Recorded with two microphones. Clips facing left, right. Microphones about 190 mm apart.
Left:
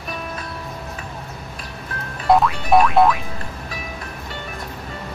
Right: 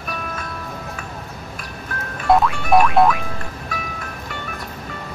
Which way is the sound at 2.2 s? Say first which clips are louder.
Even; centre (ahead or behind).